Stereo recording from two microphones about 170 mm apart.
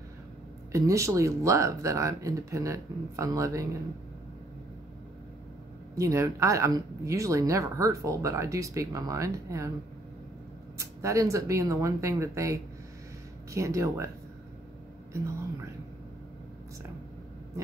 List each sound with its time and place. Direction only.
0.7 s speech: 20° right (ahead or behind)
5.9 s speech: 20° right (ahead or behind)
10.8 s speech: 20° right (ahead or behind)